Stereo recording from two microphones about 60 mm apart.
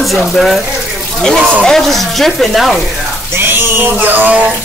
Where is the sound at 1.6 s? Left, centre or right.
Centre.